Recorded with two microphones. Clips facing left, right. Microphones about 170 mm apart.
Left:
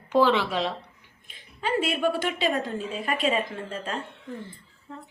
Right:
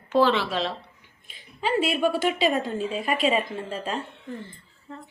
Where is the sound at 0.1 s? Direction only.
15° left (ahead or behind).